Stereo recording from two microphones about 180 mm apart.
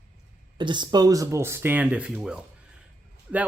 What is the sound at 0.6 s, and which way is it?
Speech, 25° right (ahead or behind).